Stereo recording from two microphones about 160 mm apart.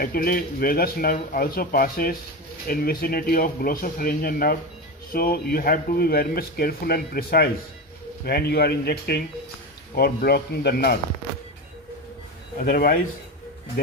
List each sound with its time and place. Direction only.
0.0 s speech: 70° left (ahead or behind)
12.5 s speech: 65° left (ahead or behind)